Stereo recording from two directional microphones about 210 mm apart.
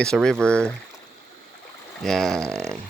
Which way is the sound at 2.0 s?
Centre (ahead or behind).